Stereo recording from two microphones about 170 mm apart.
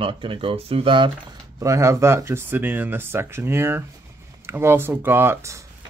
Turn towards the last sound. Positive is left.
turn(degrees=-15)  # may be behind; listen again after turning